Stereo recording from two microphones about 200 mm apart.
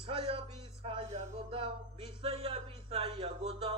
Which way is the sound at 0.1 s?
25° right (ahead or behind).